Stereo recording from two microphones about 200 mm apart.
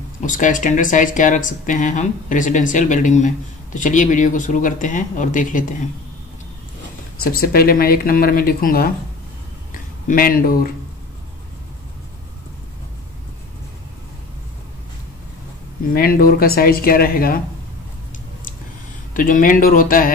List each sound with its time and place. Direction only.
0.2 s speech: 40° left (ahead or behind)
7.3 s speech: 50° left (ahead or behind)
10.0 s speech: 45° left (ahead or behind)
15.9 s speech: 50° left (ahead or behind)
19.1 s speech: 45° left (ahead or behind)